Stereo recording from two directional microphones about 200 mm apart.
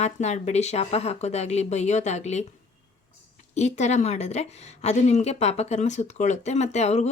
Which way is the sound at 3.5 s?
35° left (ahead or behind).